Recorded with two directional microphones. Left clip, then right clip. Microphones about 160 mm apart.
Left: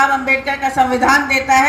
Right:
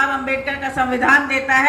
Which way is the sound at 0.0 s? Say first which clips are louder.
Left 5 dB; 20° left (ahead or behind).